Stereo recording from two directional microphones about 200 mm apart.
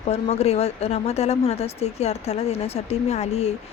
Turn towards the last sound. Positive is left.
turn(degrees=30)  # may be behind; listen again after turning